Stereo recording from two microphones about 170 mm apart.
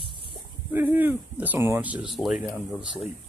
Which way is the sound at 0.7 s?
10° right (ahead or behind).